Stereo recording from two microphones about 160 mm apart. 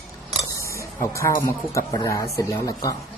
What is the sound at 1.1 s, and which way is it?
Speech, 20° left (ahead or behind).